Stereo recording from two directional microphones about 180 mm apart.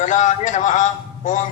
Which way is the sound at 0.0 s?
40° left (ahead or behind).